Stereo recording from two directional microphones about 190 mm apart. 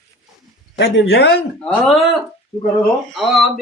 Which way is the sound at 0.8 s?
85° left.